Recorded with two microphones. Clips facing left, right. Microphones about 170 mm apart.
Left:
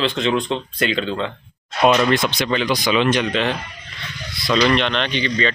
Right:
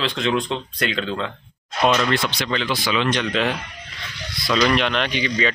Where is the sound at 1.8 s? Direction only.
20° left (ahead or behind).